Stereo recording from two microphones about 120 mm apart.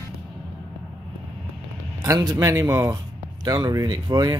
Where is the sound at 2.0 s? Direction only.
30° right (ahead or behind).